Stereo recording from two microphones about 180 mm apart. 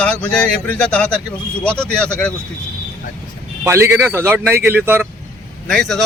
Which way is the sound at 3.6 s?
15° right (ahead or behind).